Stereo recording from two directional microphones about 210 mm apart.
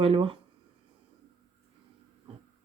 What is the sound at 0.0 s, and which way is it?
Speech, 25° right (ahead or behind).